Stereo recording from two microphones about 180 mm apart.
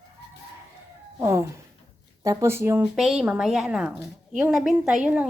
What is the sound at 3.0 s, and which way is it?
A woman's voice, centre (ahead or behind).